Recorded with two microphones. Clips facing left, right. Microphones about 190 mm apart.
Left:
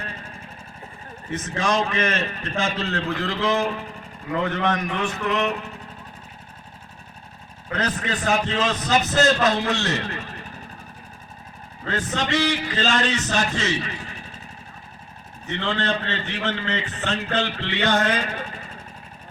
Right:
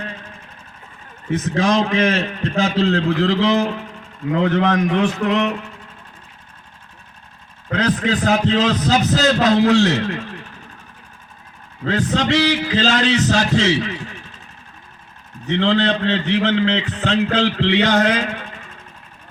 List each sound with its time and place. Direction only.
1.9 s a man's voice: 90° right
7.7 s a man's voice: 90° right
11.9 s a man's voice: 90° right
15.4 s a man's voice: 90° right